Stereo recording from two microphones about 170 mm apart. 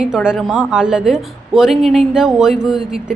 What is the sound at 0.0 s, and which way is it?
A woman's voice, 5° right (ahead or behind).